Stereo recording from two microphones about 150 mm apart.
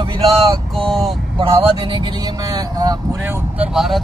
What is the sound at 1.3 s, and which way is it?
Speech, 25° right (ahead or behind).